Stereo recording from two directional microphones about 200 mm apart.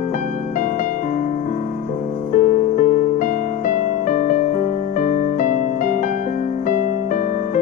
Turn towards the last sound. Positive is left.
turn(degrees=40)  # may be behind; listen again after turning